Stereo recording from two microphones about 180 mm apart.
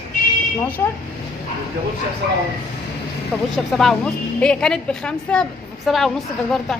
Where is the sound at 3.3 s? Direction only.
5° right (ahead or behind).